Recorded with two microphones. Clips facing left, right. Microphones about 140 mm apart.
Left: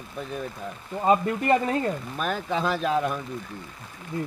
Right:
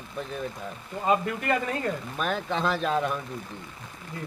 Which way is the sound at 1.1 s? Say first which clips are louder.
Left 4 dB; 30° left (ahead or behind).